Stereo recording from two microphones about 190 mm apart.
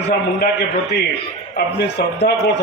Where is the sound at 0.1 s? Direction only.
60° left (ahead or behind).